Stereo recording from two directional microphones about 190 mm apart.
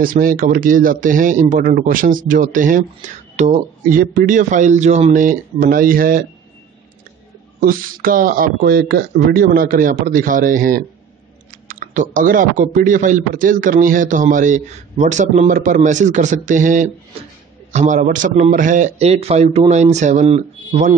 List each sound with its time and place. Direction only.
0.0 s speech: 45° right (ahead or behind)
4.0 s speech: 50° right (ahead or behind)
7.6 s a man's voice: 50° right (ahead or behind); by 20.9 s 30° right (ahead or behind)